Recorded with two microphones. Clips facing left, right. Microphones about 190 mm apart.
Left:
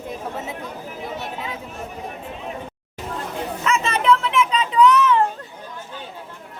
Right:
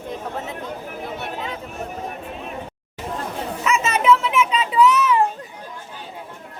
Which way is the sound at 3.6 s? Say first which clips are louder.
Right 1 dB; 5° right (ahead or behind).